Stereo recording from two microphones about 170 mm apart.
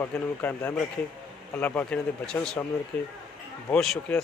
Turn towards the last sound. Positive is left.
turn(degrees=5)  # may be behind; listen again after turning